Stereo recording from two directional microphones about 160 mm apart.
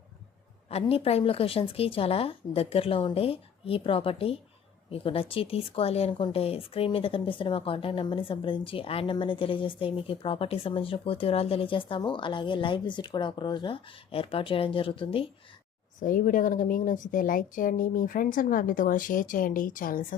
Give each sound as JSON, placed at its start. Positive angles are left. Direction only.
{"t": 0.7, "sound": "speech", "side_deg": 40}
{"t": 16.0, "sound": "a woman's voice", "side_deg": 55}